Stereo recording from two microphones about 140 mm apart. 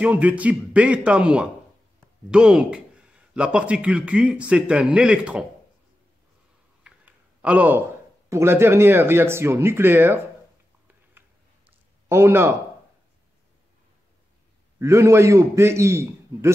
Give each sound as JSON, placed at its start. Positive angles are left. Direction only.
{"t": 0.0, "sound": "a man's voice", "side_deg": -10}
{"t": 6.8, "sound": "a sound", "side_deg": -10}
{"t": 8.3, "sound": "a man's voice", "side_deg": -15}
{"t": 12.1, "sound": "a man's voice", "side_deg": -20}
{"t": 14.8, "sound": "a man's voice", "side_deg": -20}